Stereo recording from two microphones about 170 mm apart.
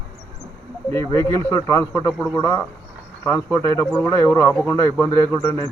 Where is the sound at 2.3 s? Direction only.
20° left (ahead or behind).